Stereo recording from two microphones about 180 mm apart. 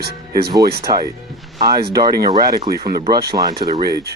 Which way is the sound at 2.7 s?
55° right (ahead or behind).